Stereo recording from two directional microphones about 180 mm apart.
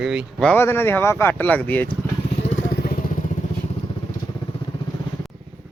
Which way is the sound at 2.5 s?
75° left (ahead or behind).